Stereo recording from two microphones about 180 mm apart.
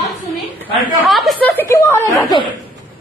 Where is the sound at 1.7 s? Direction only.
15° left (ahead or behind).